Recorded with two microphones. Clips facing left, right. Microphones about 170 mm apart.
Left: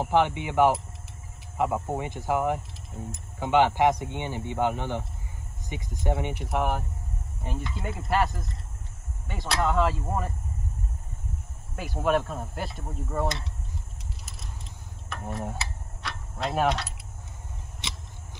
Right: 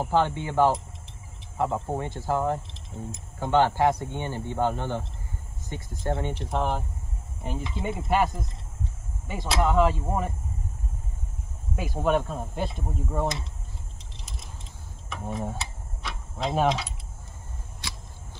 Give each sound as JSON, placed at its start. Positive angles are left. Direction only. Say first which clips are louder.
{"t": 0.0, "sound": "speech", "louder": "left 1 dB", "side_deg": 15}
{"t": 11.7, "sound": "speech", "louder": "right 1 dB", "side_deg": 0}
{"t": 14.1, "sound": "keys jangling", "louder": "right 3 dB", "side_deg": 5}
{"t": 15.0, "sound": "mechanisms", "louder": "right 2 dB", "side_deg": 0}
{"t": 17.8, "sound": "a sound", "louder": "even", "side_deg": 20}